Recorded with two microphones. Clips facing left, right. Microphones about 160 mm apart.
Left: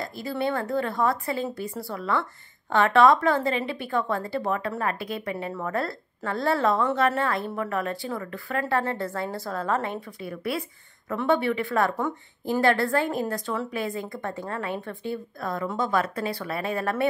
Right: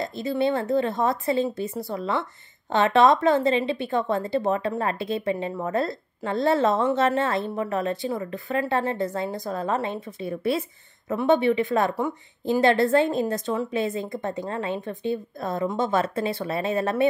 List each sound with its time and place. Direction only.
0.0 s a woman's voice: 20° right (ahead or behind)